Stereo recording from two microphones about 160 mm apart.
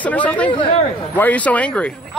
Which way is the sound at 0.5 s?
35° left (ahead or behind).